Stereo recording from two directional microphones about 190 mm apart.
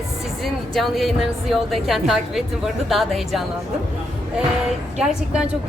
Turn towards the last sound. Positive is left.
turn(degrees=-5)  # may be behind; listen again after turning